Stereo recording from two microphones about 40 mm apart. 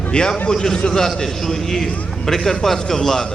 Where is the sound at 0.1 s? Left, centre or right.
Centre.